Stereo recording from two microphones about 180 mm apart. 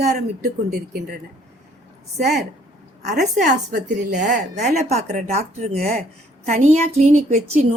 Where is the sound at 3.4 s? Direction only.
45° right (ahead or behind).